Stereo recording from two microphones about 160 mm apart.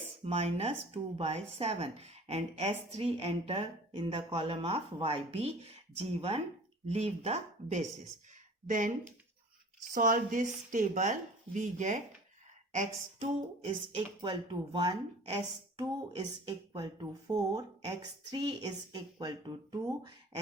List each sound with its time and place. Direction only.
0.3 s speech: 40° right (ahead or behind)
16.7 s a woman's voice: 25° right (ahead or behind)